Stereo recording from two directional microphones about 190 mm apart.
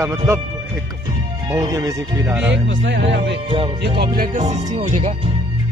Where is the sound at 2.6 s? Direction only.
70° right (ahead or behind).